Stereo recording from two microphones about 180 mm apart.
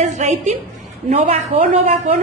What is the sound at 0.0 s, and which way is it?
A woman's voice, 40° right (ahead or behind).